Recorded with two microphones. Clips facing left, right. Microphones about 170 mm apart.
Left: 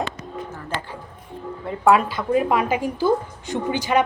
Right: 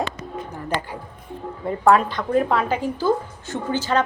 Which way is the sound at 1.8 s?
5° left (ahead or behind).